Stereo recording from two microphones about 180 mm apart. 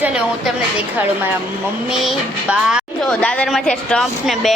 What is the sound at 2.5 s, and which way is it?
A woman's voice, 5° right (ahead or behind).